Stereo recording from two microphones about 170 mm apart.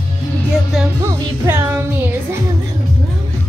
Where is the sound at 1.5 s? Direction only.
15° right (ahead or behind).